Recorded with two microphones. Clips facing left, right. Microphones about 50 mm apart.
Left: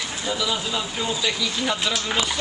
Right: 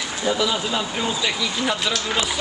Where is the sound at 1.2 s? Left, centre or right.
Centre.